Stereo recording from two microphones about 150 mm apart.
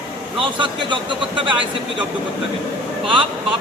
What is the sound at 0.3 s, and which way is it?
Speech, 30° right (ahead or behind).